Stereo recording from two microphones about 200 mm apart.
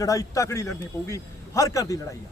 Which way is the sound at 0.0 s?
15° left (ahead or behind).